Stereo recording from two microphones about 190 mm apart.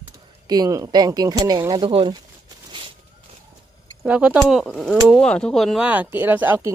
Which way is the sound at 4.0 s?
5° right (ahead or behind).